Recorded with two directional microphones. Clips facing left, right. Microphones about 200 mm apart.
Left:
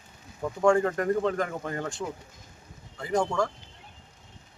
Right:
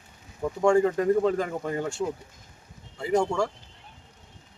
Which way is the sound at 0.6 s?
10° right (ahead or behind).